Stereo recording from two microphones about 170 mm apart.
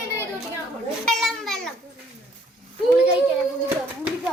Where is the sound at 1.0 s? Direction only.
Centre (ahead or behind).